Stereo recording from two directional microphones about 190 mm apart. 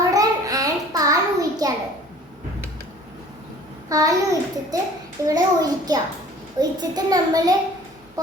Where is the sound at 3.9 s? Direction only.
20° right (ahead or behind).